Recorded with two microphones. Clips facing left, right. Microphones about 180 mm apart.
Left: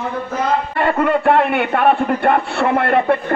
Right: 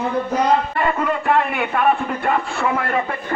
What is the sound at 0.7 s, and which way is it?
A man's voice, 60° left (ahead or behind).